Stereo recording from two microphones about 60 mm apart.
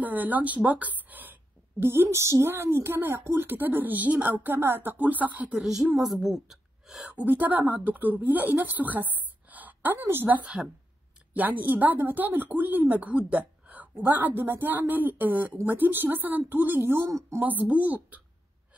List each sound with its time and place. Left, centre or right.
0.0 s speech: right
1.8 s a woman's voice: right
2.5 s a woman's voice: right
5.5 s a woman's voice: centre
7.2 s a woman's voice: right
17.4 s speech: right